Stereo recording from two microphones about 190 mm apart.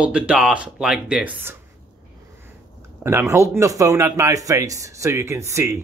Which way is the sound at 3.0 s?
15° right (ahead or behind).